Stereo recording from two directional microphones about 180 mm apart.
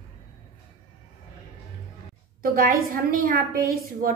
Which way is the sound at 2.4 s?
55° right (ahead or behind).